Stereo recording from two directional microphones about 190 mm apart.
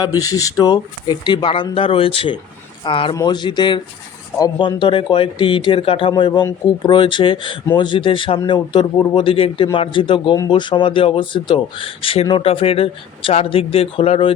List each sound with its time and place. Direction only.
0.0 s speech: 20° left (ahead or behind)